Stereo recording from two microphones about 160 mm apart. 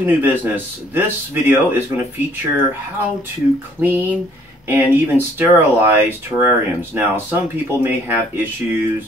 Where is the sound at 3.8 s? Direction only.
10° right (ahead or behind).